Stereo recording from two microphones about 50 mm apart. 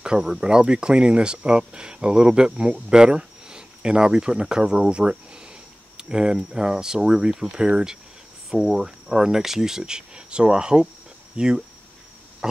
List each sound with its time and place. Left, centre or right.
0.2 s speech: centre